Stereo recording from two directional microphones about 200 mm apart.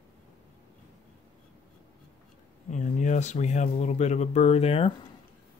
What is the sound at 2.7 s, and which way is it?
Speech, 35° left (ahead or behind).